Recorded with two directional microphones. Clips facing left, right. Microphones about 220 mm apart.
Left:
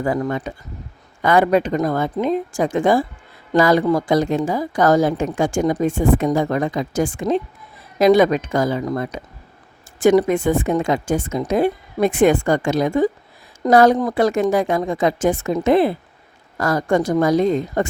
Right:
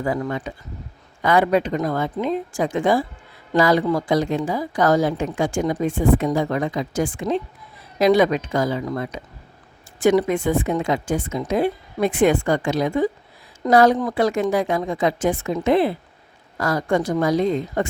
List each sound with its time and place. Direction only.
0.0 s a woman's voice: 45° left (ahead or behind)